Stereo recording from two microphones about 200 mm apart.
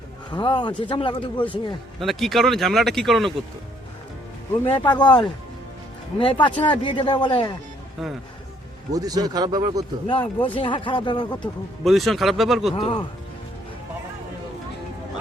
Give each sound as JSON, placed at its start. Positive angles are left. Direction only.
{"t": 0.3, "sound": "a man's voice", "side_deg": 25}
{"t": 2.0, "sound": "speech", "side_deg": 0}
{"t": 4.6, "sound": "a man's voice", "side_deg": 25}
{"t": 8.0, "sound": "speech", "side_deg": 0}
{"t": 8.9, "sound": "speech", "side_deg": -20}
{"t": 10.1, "sound": "a man's voice", "side_deg": 25}
{"t": 11.9, "sound": "speech", "side_deg": 0}
{"t": 12.7, "sound": "a man's voice", "side_deg": 25}